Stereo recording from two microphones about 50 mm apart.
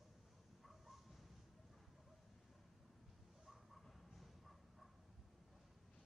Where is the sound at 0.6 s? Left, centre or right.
Centre.